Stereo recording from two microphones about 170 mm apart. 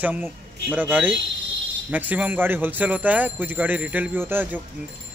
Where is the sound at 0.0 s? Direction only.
10° right (ahead or behind).